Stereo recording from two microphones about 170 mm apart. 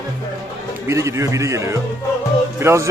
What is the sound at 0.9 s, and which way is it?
A man's voice, 15° right (ahead or behind).